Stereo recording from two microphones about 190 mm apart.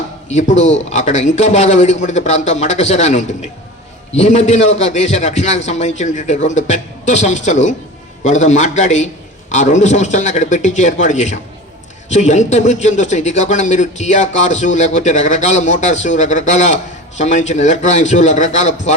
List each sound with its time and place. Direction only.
0.3 s a man's voice: 35° left (ahead or behind)